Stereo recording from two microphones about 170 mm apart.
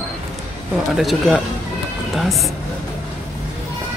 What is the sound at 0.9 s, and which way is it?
Speech, centre (ahead or behind).